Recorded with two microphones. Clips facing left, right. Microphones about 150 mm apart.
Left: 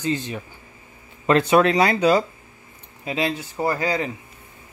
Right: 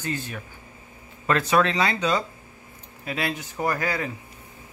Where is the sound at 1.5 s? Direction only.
35° left (ahead or behind).